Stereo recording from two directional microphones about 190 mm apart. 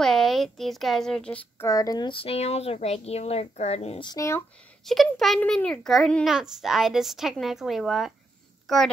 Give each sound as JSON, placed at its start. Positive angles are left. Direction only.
{"t": 0.0, "sound": "a woman's voice", "side_deg": 0}
{"t": 4.1, "sound": "speech", "side_deg": 15}
{"t": 4.8, "sound": "a child's voice", "side_deg": 0}